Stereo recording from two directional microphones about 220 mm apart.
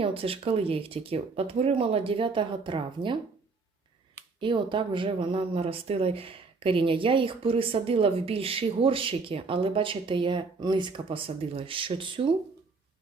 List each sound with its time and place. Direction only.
0.0 s speech: 25° right (ahead or behind)
4.4 s speech: 20° right (ahead or behind)